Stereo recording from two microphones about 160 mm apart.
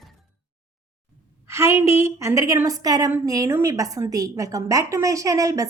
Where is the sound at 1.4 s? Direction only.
15° right (ahead or behind).